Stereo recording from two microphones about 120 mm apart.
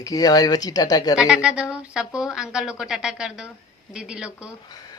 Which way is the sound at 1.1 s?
5° right (ahead or behind).